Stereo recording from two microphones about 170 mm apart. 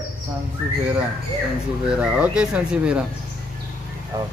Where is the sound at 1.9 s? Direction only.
5° right (ahead or behind).